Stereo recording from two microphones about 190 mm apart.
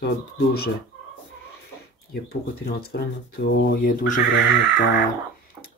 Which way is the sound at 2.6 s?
55° left (ahead or behind).